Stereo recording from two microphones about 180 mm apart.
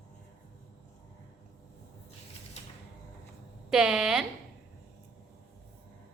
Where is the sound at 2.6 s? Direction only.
35° left (ahead or behind).